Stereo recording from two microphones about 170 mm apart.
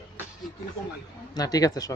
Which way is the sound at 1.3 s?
20° left (ahead or behind).